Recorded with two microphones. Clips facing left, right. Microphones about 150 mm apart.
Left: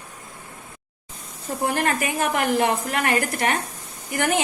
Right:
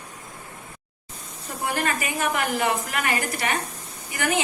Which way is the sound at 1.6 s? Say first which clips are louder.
Left 3 dB; 55° left (ahead or behind).